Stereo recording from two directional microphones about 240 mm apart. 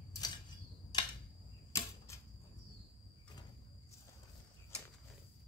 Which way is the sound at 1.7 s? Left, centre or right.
Centre.